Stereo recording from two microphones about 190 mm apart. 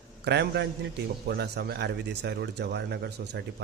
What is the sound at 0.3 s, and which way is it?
Speech, 60° right (ahead or behind).